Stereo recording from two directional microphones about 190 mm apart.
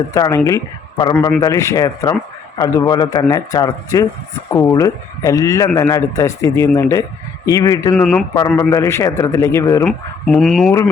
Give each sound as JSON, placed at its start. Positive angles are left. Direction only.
{"t": 0.1, "sound": "a man's voice", "side_deg": 15}
{"t": 7.9, "sound": "speech", "side_deg": 5}
{"t": 9.8, "sound": "speech", "side_deg": 5}